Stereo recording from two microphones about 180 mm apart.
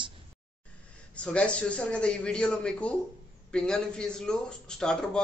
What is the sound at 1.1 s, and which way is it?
Speech, 5° left (ahead or behind).